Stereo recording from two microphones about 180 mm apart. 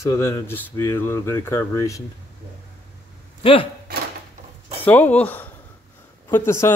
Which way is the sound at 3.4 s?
30° left (ahead or behind).